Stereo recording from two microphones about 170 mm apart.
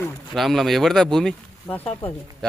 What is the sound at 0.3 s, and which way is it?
Speech, centre (ahead or behind).